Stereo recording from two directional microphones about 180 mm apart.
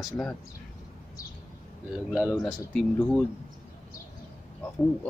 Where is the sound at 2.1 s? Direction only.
5° right (ahead or behind).